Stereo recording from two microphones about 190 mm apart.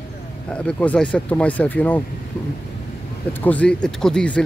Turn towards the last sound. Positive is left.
turn(degrees=5)  # may be behind; listen again after turning